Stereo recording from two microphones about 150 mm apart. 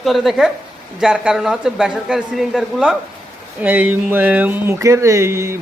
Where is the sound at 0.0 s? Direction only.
Centre (ahead or behind).